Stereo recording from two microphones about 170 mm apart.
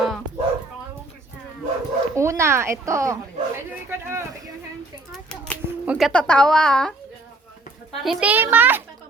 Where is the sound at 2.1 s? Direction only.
15° right (ahead or behind).